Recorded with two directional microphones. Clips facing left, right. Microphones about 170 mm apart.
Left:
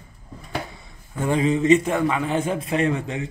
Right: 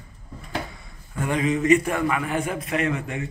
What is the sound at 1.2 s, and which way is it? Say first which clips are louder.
A man's voice: left 3 dB; 30° left (ahead or behind).